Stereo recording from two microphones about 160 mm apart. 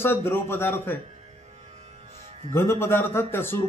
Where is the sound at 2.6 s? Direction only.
15° left (ahead or behind).